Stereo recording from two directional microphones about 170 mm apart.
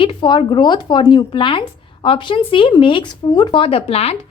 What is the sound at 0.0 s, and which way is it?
Speech, 30° left (ahead or behind).